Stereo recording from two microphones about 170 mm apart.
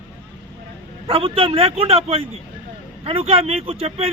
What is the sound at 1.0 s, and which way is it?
Speech, 35° right (ahead or behind).